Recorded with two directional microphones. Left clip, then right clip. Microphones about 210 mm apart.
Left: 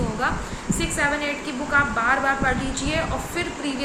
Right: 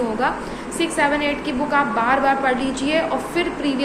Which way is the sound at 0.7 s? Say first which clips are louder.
Right 5 dB; 15° left (ahead or behind).